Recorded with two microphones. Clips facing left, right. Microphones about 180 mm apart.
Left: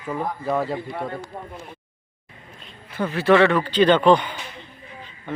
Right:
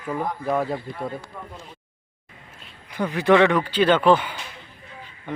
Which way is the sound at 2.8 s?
15° right (ahead or behind).